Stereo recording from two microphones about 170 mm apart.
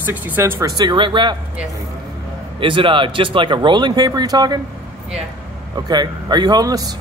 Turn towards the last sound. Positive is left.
turn(degrees=-20)  # may be behind; listen again after turning